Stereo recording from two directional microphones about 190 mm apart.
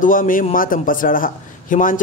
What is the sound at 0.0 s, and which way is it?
A man's voice, 45° left (ahead or behind).